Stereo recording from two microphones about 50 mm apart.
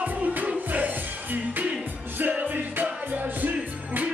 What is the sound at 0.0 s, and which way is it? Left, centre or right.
Music, right.